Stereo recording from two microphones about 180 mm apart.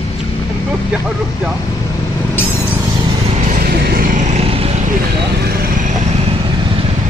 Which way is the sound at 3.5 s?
55° right (ahead or behind).